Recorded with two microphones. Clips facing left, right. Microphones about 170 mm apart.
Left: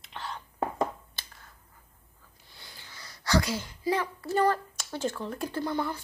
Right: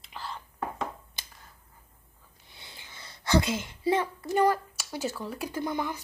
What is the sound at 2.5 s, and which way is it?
A child's voice, 20° right (ahead or behind).